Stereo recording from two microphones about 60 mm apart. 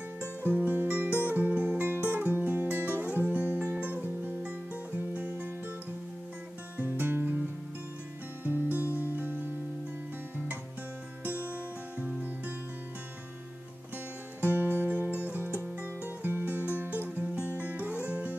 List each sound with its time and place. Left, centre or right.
0.2 s music: right
6.8 s music: right
8.5 s music: right
11.2 s music: right
14.5 s music: right